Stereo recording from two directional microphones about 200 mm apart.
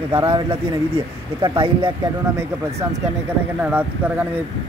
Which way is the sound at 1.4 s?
25° right (ahead or behind).